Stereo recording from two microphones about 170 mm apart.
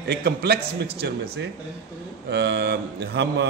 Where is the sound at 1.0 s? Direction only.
90° right.